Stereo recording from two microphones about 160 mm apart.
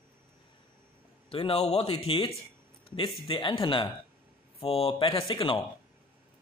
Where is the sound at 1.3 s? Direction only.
35° left (ahead or behind).